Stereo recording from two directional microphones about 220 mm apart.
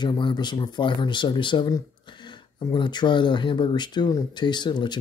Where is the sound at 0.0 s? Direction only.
20° left (ahead or behind).